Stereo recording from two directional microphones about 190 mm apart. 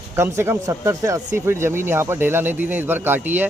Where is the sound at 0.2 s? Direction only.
15° right (ahead or behind).